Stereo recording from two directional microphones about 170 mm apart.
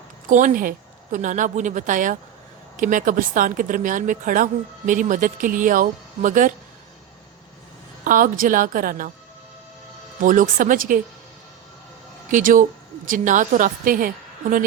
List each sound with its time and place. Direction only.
0.3 s speech: 50° right (ahead or behind)
8.0 s speech: 55° right (ahead or behind)
10.2 s speech: 50° right (ahead or behind)
12.3 s speech: 50° right (ahead or behind)